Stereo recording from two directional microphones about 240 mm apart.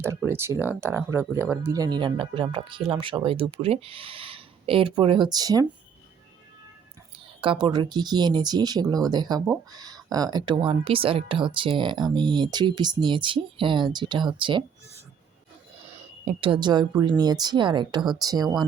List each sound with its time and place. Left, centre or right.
0.0 s speech: centre
7.4 s speech: centre
16.2 s speech: right